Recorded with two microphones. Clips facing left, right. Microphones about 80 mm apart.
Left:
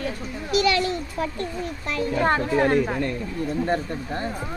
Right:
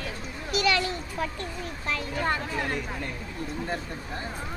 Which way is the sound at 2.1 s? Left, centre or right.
Left.